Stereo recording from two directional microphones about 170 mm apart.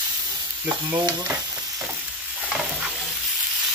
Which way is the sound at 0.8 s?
20° right (ahead or behind).